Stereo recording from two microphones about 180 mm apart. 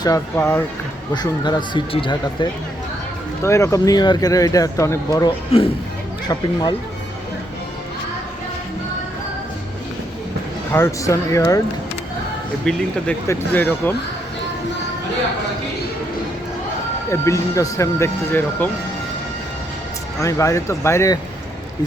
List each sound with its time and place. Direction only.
0.0 s speech: 15° left (ahead or behind)
3.4 s speech: 15° left (ahead or behind)
5.5 s speech: 35° left (ahead or behind)
6.2 s speech: 20° left (ahead or behind)
10.7 s speech: 15° left (ahead or behind)
12.7 s speech: 5° left (ahead or behind)
17.1 s speech: 15° left (ahead or behind)
20.2 s speech: 15° left (ahead or behind)